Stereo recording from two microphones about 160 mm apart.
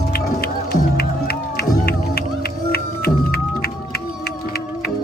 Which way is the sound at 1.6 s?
75° left (ahead or behind).